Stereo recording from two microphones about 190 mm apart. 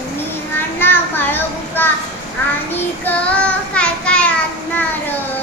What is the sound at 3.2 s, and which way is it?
Child singing, 5° left (ahead or behind).